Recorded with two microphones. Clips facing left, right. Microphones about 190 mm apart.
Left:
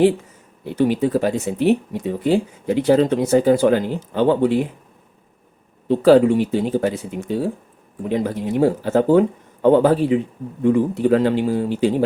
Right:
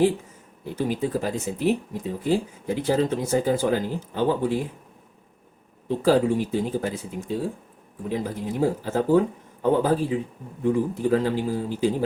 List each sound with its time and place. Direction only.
0.6 s speech: 70° left (ahead or behind)
5.9 s speech: 75° left (ahead or behind)